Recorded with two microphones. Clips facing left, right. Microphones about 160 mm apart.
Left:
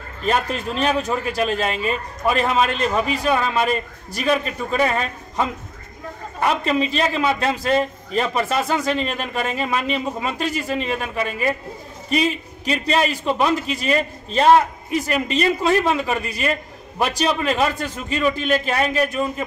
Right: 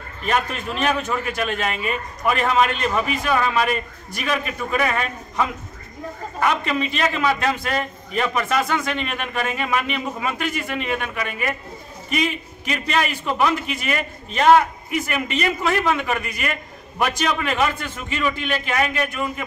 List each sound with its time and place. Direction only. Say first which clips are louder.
0.2 s a man's voice: left 2 dB; 35° left (ahead or behind)